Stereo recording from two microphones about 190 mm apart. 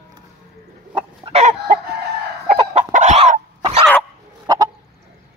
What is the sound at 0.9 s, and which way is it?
Chicken, 30° right (ahead or behind).